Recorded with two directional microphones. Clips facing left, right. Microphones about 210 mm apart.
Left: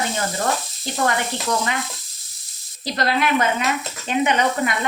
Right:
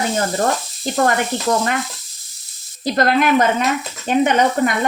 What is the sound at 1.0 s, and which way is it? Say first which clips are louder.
Speech: right 3 dB; 50° right (ahead or behind).